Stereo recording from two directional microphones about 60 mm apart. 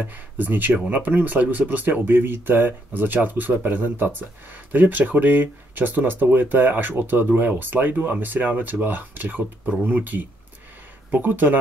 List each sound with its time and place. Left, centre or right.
0.0 s speech: right